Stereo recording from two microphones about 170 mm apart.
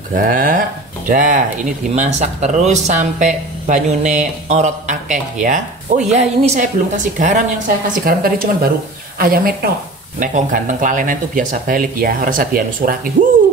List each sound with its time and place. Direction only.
0.1 s a woman's voice: 55° right (ahead or behind)